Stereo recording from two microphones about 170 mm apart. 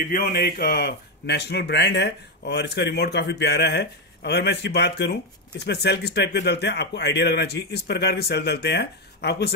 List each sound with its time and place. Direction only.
0.1 s a man's voice: 65° left (ahead or behind)